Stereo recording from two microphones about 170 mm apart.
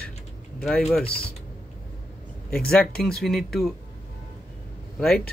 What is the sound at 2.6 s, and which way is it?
Speech, 5° left (ahead or behind).